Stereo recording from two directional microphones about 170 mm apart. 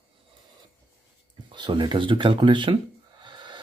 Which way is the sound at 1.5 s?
25° right (ahead or behind).